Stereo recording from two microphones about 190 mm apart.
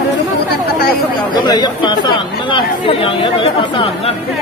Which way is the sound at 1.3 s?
25° left (ahead or behind).